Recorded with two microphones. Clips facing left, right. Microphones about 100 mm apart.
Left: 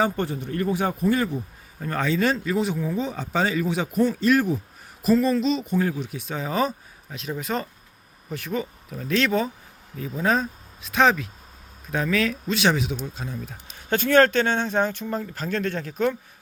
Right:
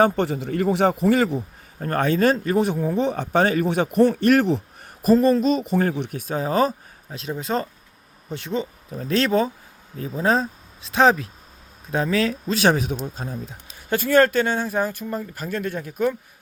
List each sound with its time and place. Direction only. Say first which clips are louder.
0.0 s a man's voice: right 5 dB; 85° right
1.8 s speech: right 4 dB; 50° right (ahead or behind)
3.0 s a man's voice: right 7 dB; 60° right (ahead or behind)
5.0 s speech: right 3 dB; 45° right (ahead or behind)
5.6 s a man's voice: right 3 dB; 65° right (ahead or behind)
6.0 s speech: right 4 dB; 50° right (ahead or behind)
13.9 s speech: right 1 dB; 10° right (ahead or behind)